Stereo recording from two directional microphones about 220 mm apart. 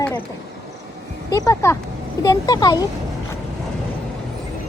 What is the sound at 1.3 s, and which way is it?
Speech, 15° left (ahead or behind).